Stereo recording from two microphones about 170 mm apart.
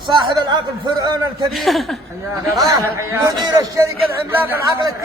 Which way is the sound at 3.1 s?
20° right (ahead or behind).